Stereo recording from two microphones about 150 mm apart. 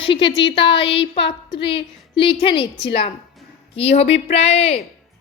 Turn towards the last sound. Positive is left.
turn(degrees=45)  # may be behind; listen again after turning